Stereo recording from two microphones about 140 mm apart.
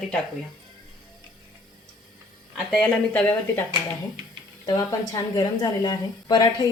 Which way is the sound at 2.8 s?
10° left (ahead or behind).